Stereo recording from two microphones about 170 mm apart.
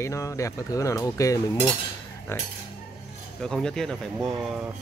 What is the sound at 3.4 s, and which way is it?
Speech, 5° left (ahead or behind).